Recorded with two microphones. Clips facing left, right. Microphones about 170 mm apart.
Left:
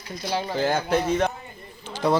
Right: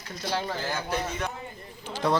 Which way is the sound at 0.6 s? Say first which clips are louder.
Left 8 dB; 60° left (ahead or behind).